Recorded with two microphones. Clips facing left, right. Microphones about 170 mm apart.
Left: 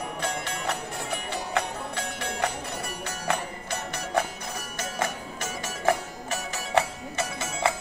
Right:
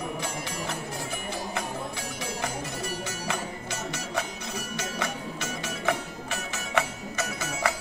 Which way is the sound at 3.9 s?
55° left (ahead or behind).